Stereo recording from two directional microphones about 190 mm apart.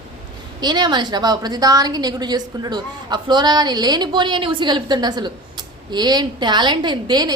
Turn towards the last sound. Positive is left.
turn(degrees=-20)  # may be behind; listen again after turning